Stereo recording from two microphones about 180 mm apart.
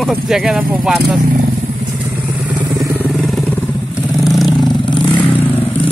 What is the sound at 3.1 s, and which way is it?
Vehicle, centre (ahead or behind).